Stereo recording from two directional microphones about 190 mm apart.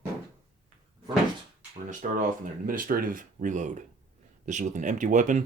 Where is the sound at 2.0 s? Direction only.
45° right (ahead or behind).